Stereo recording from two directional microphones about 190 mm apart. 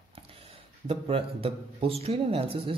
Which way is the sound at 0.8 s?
30° right (ahead or behind).